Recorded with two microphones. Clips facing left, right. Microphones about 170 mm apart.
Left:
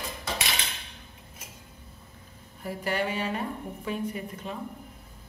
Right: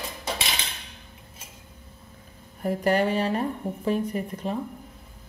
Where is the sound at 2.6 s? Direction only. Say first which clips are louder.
Right 7 dB; 45° right (ahead or behind).